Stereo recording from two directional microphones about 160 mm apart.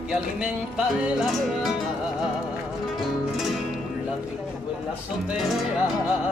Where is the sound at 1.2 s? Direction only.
Centre (ahead or behind).